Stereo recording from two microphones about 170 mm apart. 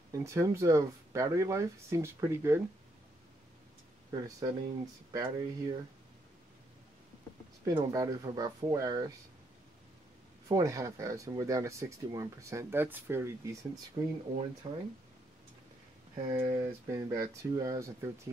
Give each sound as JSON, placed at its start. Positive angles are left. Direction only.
{"t": 0.1, "sound": "speech", "side_deg": -15}
{"t": 4.1, "sound": "speech", "side_deg": -20}
{"t": 7.6, "sound": "speech", "side_deg": -20}
{"t": 10.5, "sound": "speech", "side_deg": -20}
{"t": 16.3, "sound": "speech", "side_deg": -10}